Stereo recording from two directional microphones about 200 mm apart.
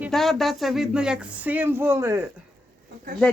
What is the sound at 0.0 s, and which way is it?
Speech, centre (ahead or behind).